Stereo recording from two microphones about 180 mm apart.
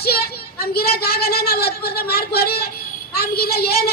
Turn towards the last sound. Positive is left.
turn(degrees=60)  # may be behind; listen again after turning